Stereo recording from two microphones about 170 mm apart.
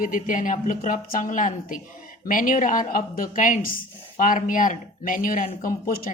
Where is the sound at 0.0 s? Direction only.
50° left (ahead or behind).